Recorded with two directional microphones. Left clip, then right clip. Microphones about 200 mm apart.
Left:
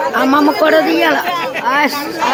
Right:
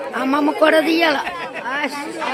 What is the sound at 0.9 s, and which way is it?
Speech, 50° right (ahead or behind).